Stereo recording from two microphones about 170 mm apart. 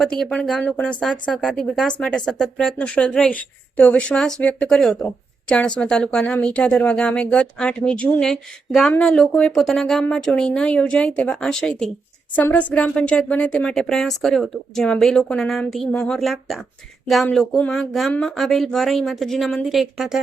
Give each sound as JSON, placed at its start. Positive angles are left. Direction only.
{"t": 0.0, "sound": "a woman's voice", "side_deg": 5}